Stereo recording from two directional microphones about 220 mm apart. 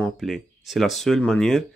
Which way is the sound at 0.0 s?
Centre (ahead or behind).